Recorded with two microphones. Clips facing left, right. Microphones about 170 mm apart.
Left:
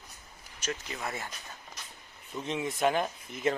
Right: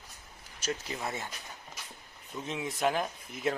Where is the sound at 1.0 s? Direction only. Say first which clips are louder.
Even; 20° right (ahead or behind).